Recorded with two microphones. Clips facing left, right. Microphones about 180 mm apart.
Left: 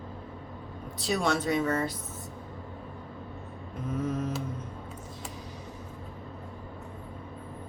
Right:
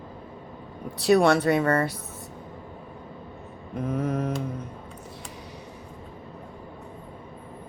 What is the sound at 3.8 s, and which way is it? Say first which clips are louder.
Mantra: right 4 dB; 65° right (ahead or behind).